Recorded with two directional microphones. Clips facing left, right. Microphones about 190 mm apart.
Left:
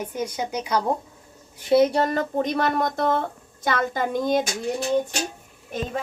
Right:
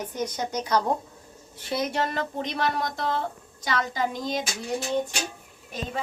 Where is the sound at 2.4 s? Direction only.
50° left (ahead or behind).